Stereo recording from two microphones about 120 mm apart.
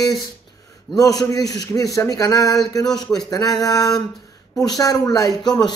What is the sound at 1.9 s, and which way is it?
Speech, 30° left (ahead or behind).